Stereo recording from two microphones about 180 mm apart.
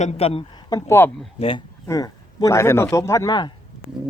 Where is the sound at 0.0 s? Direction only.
35° left (ahead or behind); by 1.1 s 15° left (ahead or behind).